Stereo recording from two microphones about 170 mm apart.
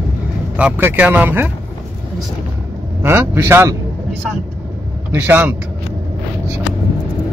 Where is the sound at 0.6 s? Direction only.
10° right (ahead or behind).